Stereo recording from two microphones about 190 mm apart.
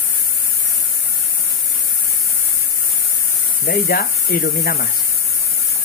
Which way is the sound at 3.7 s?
50° left (ahead or behind).